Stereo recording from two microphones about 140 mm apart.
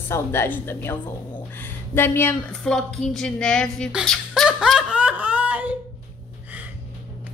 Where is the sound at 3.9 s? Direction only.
Centre (ahead or behind).